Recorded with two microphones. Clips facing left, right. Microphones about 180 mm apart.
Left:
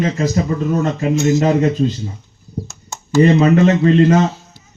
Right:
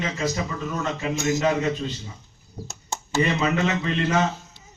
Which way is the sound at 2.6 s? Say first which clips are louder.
Even; 30° right (ahead or behind).